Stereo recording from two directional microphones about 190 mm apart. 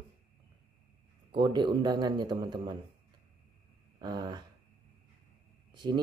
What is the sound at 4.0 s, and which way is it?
Speech, 20° right (ahead or behind).